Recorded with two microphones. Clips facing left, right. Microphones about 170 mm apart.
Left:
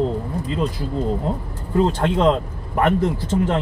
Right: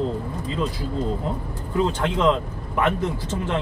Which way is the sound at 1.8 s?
40° left (ahead or behind).